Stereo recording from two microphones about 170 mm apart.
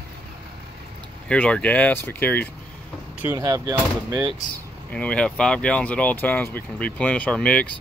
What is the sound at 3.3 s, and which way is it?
Speech, 20° right (ahead or behind).